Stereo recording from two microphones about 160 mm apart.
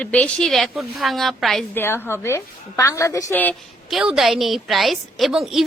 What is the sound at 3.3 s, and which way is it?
Speech, 10° left (ahead or behind).